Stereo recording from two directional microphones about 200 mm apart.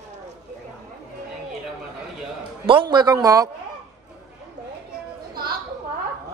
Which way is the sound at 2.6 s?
25° right (ahead or behind).